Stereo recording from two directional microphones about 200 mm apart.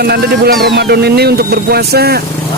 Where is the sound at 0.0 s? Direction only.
50° right (ahead or behind).